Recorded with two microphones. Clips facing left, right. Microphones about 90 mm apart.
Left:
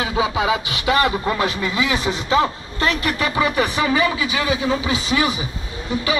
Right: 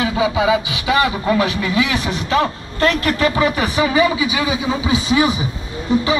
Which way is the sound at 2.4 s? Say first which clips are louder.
Right 3 dB; 5° left (ahead or behind).